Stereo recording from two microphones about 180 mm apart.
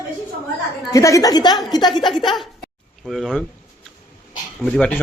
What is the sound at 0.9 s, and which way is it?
A woman's voice, 20° left (ahead or behind).